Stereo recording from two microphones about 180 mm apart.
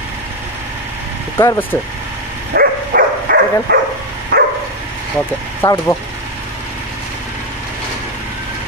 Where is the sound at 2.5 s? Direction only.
60° right (ahead or behind).